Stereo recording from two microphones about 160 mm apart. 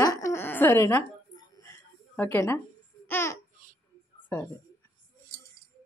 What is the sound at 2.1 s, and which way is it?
Speech, 15° left (ahead or behind).